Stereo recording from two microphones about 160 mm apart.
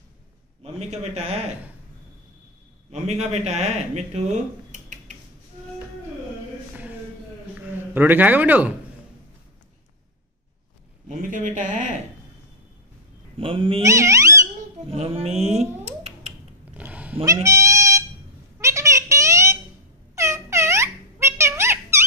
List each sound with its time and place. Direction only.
0.7 s a man's voice: 45° right (ahead or behind)
2.9 s speech: 45° right (ahead or behind)
7.9 s speech: 10° right (ahead or behind)
11.1 s a man's voice: 55° right (ahead or behind)
13.4 s speech: 35° right (ahead or behind)
13.8 s a sound: 20° right (ahead or behind)
14.9 s speech: 35° right (ahead or behind)
15.8 s a sound: 45° right (ahead or behind)
16.7 s cat: 10° right (ahead or behind)
18.6 s a sound: 20° right (ahead or behind)